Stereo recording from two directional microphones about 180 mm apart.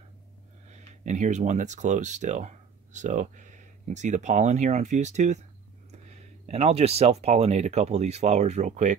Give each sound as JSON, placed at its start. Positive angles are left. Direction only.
{"t": 0.7, "sound": "speech", "side_deg": -40}